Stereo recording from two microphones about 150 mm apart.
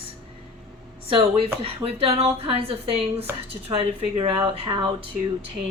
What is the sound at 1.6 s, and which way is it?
Speech, 40° right (ahead or behind).